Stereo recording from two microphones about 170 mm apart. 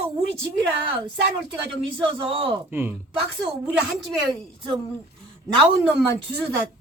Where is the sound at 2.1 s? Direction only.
30° right (ahead or behind).